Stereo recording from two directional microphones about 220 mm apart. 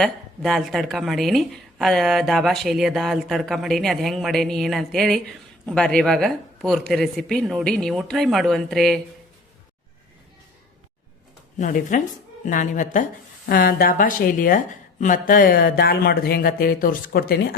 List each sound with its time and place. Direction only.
0.0 s speech: centre (ahead or behind)
11.5 s a woman's voice: 35° left (ahead or behind)